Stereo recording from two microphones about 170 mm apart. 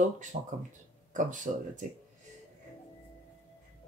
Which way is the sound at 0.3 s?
45° right (ahead or behind).